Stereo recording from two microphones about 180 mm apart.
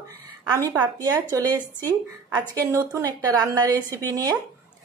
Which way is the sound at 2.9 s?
20° right (ahead or behind).